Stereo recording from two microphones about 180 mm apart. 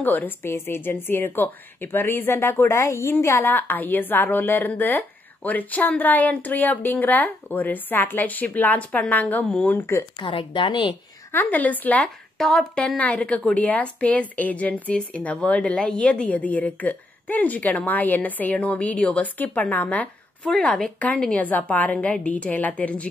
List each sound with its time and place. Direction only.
0.0 s a woman's voice: 10° left (ahead or behind)
10.1 s speech: 25° left (ahead or behind)
11.3 s a woman's voice: 10° left (ahead or behind)